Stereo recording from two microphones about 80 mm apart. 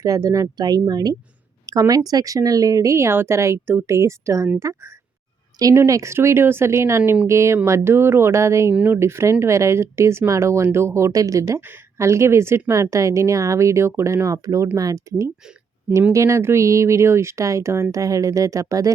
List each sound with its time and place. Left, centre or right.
0.0 s speech: right